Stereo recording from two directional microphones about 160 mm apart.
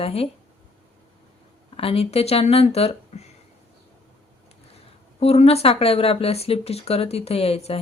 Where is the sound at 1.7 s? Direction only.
35° left (ahead or behind).